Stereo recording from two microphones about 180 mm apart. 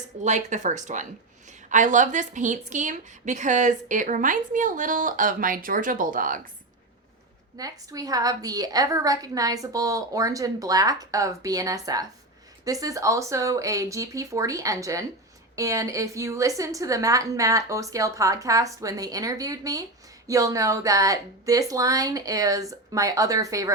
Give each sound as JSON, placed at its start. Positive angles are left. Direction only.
{"t": 0.3, "sound": "a woman's voice", "side_deg": -40}
{"t": 7.5, "sound": "a woman's voice", "side_deg": -20}